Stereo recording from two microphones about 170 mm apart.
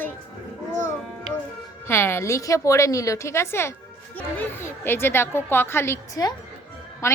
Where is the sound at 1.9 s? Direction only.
15° left (ahead or behind).